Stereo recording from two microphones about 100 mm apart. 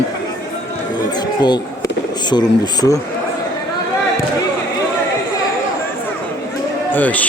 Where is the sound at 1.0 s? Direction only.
45° left (ahead or behind).